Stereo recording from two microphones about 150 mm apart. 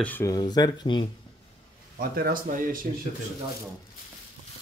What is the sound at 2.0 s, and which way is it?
Speech, 75° right (ahead or behind).